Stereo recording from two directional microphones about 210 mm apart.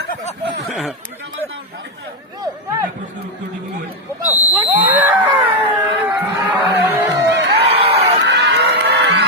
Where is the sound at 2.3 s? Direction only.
15° right (ahead or behind).